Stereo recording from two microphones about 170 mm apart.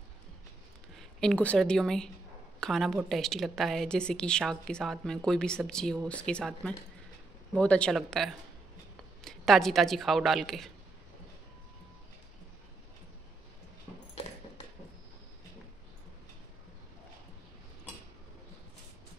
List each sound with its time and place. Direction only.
0.9 s a woman's voice: 5° left (ahead or behind)